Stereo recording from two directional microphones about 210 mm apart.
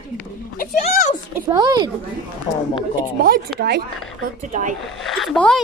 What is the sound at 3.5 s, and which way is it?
Speech, 50° right (ahead or behind).